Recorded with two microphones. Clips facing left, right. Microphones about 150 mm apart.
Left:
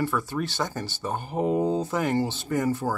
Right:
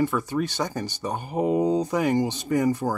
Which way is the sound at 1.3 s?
Centre (ahead or behind).